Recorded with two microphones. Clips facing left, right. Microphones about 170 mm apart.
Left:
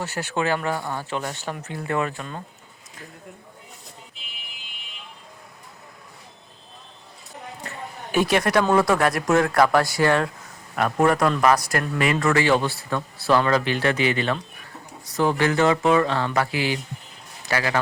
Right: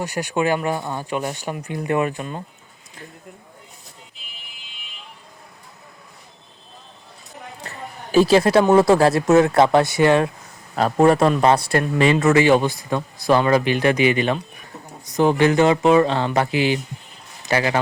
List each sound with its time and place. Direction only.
0.0 s speech: 15° right (ahead or behind)
8.1 s a man's voice: 30° right (ahead or behind)